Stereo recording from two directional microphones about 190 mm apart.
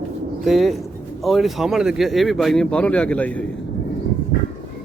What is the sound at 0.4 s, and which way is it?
Speech, centre (ahead or behind).